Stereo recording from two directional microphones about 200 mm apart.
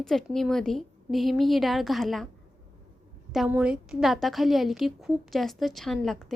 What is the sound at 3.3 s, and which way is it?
A woman's voice, 5° right (ahead or behind).